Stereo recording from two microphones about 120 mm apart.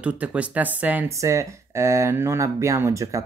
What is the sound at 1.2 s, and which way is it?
Speech, 25° right (ahead or behind).